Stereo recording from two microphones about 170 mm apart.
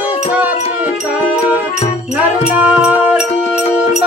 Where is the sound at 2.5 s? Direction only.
5° right (ahead or behind).